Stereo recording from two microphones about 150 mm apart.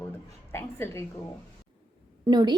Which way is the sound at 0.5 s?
15° left (ahead or behind).